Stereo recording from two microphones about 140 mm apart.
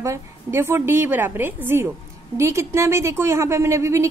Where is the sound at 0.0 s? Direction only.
20° right (ahead or behind).